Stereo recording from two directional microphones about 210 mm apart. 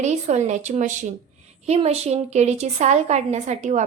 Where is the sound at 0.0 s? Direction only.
35° right (ahead or behind).